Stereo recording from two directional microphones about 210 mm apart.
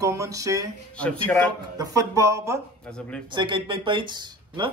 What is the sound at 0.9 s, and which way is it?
Speech, 5° left (ahead or behind).